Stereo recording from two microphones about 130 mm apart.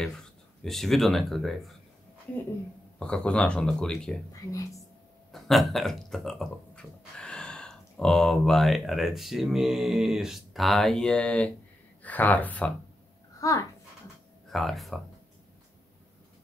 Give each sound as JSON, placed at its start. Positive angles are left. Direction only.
{"t": 0.0, "sound": "speech", "side_deg": 5}
{"t": 3.0, "sound": "speech", "side_deg": 5}
{"t": 5.3, "sound": "speech", "side_deg": 0}
{"t": 13.4, "sound": "a child's voice", "side_deg": 25}
{"t": 14.5, "sound": "speech", "side_deg": 0}